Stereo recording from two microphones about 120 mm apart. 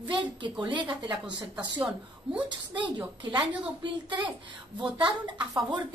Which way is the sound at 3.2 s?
40° right (ahead or behind).